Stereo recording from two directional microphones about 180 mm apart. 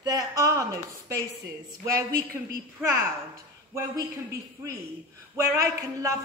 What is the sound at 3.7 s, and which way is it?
Speech, 15° right (ahead or behind).